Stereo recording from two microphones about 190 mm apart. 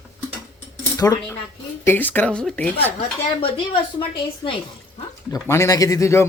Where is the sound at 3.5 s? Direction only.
25° left (ahead or behind).